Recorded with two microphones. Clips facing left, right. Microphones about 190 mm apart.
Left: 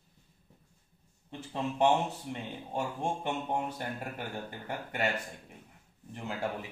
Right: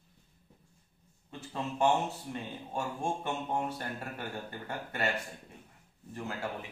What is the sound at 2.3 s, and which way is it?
Speech, 20° left (ahead or behind).